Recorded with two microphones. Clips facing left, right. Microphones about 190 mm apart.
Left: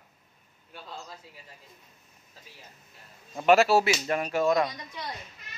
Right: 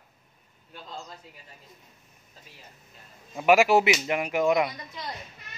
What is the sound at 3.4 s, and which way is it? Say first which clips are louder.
Speech: right 1 dB; 10° right (ahead or behind).